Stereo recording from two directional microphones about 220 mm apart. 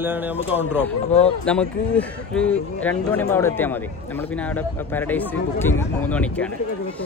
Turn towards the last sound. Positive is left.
turn(degrees=5)  # may be behind; listen again after turning